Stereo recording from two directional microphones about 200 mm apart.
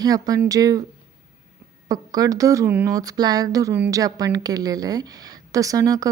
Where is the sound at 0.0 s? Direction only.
20° right (ahead or behind).